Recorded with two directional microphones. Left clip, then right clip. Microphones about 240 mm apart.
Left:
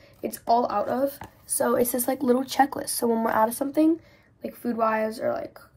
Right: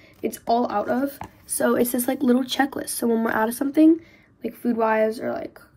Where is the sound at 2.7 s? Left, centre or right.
Centre.